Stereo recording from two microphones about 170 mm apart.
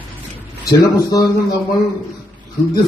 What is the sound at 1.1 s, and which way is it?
Speech, 20° left (ahead or behind).